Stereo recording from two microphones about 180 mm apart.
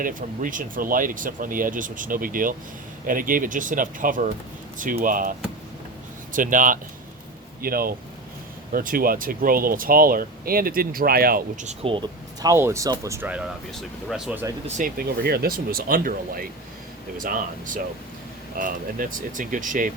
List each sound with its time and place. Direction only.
0.0 s speech: 50° right (ahead or behind); by 14.4 s 5° right (ahead or behind)
14.8 s speech: 55° right (ahead or behind)